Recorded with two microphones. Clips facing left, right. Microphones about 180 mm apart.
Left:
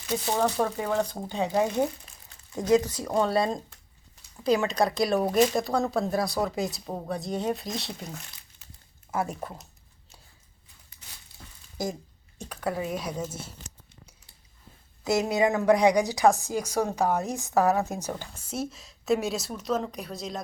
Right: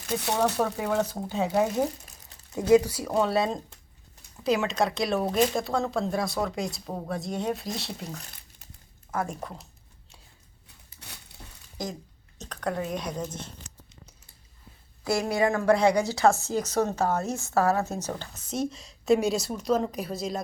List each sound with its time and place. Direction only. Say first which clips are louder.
0.3 s speech: even; 5° right (ahead or behind)
11.8 s speech: left 3 dB; 10° left (ahead or behind)
15.0 s speech: left 1 dB; 20° left (ahead or behind); by 20.4 s centre (ahead or behind)